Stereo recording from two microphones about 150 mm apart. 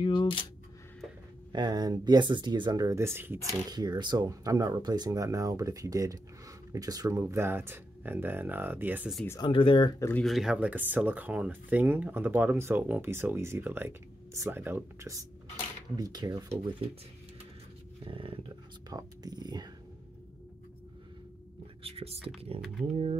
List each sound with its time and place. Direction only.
0.0 s camera: 30° left (ahead or behind)
1.5 s speech: 30° right (ahead or behind)
3.7 s speech: 25° right (ahead or behind); by 9.1 s 10° right (ahead or behind)
9.4 s speech: 35° left (ahead or behind)
9.9 s speech: 15° left (ahead or behind)
10.2 s speech: centre (ahead or behind); by 16.6 s 25° right (ahead or behind)
18.0 s speech: 35° right (ahead or behind)
18.9 s a sound: 25° right (ahead or behind)
21.8 s speech: 40° right (ahead or behind)